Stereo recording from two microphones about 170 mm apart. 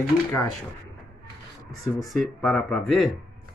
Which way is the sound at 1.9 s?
Centre (ahead or behind).